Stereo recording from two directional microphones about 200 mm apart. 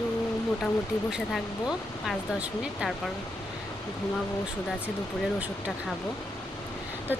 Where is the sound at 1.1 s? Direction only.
Centre (ahead or behind).